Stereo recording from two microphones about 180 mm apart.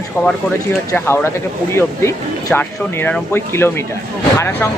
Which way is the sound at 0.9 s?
15° left (ahead or behind).